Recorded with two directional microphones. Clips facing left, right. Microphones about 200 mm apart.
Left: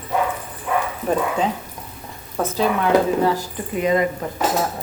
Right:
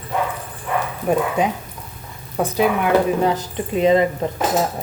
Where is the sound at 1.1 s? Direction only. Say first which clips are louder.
Right 2 dB; 15° right (ahead or behind).